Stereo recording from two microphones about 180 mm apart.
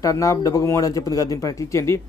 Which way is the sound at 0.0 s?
20° left (ahead or behind).